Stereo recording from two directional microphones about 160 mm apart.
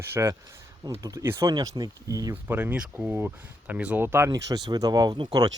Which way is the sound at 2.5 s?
10° right (ahead or behind).